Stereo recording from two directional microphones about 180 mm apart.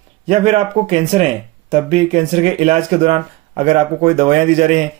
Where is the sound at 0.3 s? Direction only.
35° right (ahead or behind).